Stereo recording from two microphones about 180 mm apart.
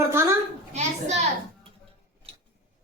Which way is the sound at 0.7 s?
40° right (ahead or behind).